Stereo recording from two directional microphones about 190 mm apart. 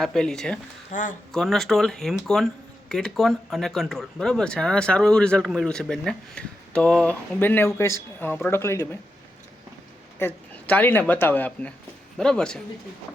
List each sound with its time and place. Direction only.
0.0 s speech: 5° left (ahead or behind)
0.9 s speech: 40° left (ahead or behind)
1.3 s speech: centre (ahead or behind)
10.2 s speech: 10° left (ahead or behind)